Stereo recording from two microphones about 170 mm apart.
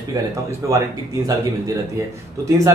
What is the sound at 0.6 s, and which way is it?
Speech, 15° right (ahead or behind).